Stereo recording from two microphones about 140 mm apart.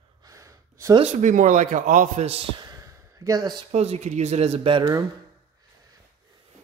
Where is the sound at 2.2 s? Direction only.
45° right (ahead or behind).